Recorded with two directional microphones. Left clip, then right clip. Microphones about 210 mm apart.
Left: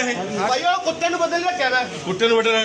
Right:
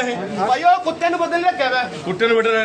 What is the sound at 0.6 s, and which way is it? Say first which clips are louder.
Speech: right 8 dB; 15° right (ahead or behind).